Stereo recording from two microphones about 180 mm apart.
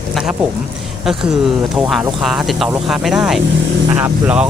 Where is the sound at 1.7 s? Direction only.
5° right (ahead or behind).